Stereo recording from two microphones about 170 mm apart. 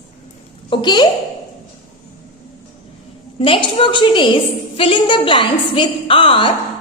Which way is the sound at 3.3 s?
30° left (ahead or behind).